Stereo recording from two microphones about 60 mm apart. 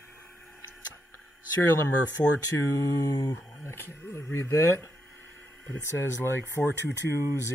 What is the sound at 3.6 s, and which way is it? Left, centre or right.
Speech, left.